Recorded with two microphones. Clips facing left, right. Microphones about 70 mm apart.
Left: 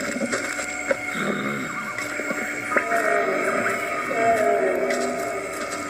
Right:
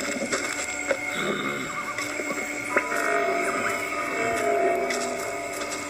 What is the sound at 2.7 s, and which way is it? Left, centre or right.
Music, left.